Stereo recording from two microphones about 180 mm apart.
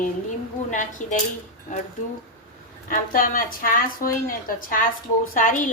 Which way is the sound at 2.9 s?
50° left (ahead or behind).